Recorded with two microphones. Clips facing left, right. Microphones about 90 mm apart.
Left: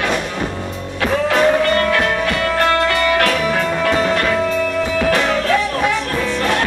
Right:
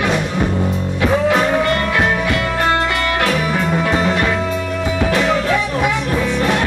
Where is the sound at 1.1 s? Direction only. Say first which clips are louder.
Left 1 dB; 10° right (ahead or behind).